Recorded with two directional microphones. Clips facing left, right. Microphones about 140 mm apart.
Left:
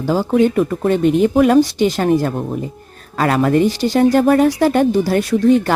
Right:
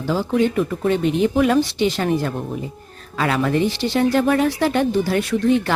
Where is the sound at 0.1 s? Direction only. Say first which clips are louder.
Left 4 dB; 45° left (ahead or behind).